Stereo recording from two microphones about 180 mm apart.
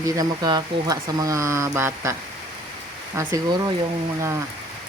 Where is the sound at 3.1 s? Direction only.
20° right (ahead or behind).